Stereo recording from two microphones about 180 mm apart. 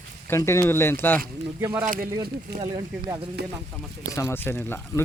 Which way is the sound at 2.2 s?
25° right (ahead or behind).